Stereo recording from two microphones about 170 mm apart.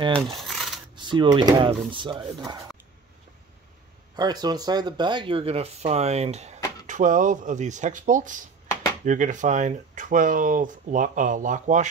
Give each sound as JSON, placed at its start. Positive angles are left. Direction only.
{"t": 0.4, "sound": "coin", "side_deg": 0}
{"t": 0.9, "sound": "speech", "side_deg": -25}
{"t": 4.2, "sound": "speech", "side_deg": -25}